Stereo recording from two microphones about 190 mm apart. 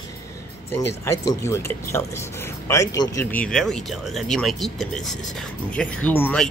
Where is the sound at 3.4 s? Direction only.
5° left (ahead or behind).